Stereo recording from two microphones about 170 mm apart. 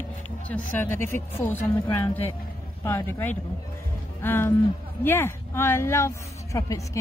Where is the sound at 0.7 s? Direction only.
15° left (ahead or behind).